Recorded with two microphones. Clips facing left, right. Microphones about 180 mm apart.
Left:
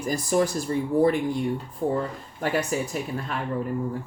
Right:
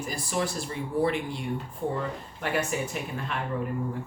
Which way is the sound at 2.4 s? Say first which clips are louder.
Left 3 dB; 40° left (ahead or behind).